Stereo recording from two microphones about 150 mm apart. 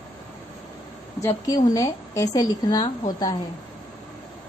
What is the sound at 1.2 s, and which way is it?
A woman's voice, 20° left (ahead or behind).